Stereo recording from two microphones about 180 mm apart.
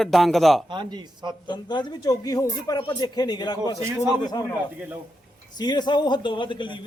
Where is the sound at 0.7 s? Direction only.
25° right (ahead or behind).